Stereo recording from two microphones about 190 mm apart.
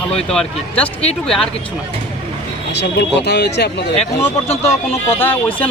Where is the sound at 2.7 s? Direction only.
65° left (ahead or behind).